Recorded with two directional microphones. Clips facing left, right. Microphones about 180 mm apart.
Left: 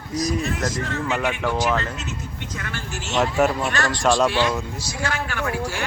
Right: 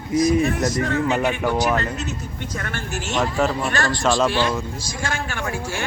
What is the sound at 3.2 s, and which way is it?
Speech, centre (ahead or behind).